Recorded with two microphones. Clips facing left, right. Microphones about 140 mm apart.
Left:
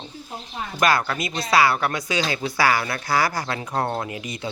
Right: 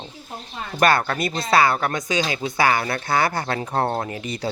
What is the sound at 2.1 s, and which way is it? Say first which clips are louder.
Speech: right 1 dB; 20° right (ahead or behind).